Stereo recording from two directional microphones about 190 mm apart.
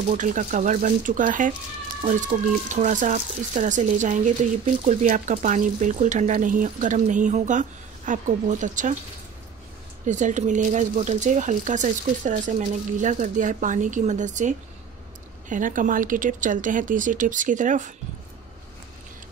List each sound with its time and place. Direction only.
0.1 s speech: 40° right (ahead or behind)
2.7 s speech: 40° right (ahead or behind)
10.0 s speech: 40° right (ahead or behind)